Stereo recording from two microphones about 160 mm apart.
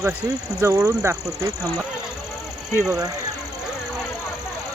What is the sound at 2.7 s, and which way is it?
Speech, 15° right (ahead or behind).